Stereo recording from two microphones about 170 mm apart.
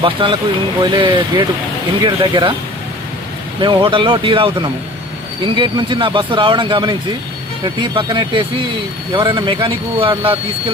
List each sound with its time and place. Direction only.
0.0 s speech: 30° right (ahead or behind)
3.6 s speech: 25° right (ahead or behind)
5.5 s speech: 30° right (ahead or behind)